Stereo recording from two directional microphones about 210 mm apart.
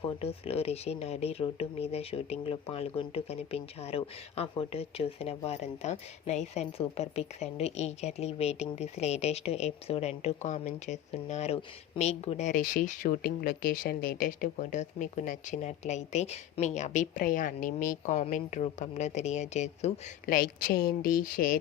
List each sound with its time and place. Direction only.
0.0 s speech: 30° left (ahead or behind)